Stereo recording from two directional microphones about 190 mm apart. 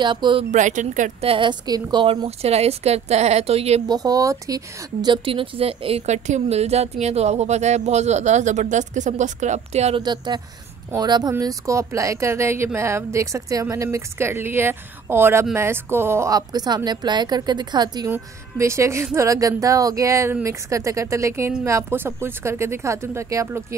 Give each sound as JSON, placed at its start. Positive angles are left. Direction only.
{"t": 0.0, "sound": "a woman's voice", "side_deg": -25}
{"t": 0.5, "sound": "speech", "side_deg": -40}
{"t": 1.3, "sound": "speech", "side_deg": -25}
{"t": 3.8, "sound": "a woman's voice", "side_deg": -20}